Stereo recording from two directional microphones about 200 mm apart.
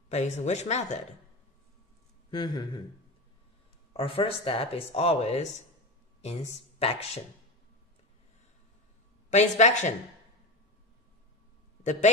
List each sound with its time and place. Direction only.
0.1 s speech: 35° left (ahead or behind)
2.3 s speech: 25° left (ahead or behind)
3.9 s speech: 25° left (ahead or behind)
9.3 s speech: 35° left (ahead or behind)
11.8 s a man's voice: 35° left (ahead or behind)